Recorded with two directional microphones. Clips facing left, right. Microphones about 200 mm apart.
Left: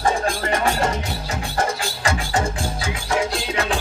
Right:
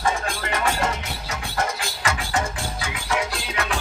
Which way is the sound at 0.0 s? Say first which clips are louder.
Left 4 dB; 30° left (ahead or behind).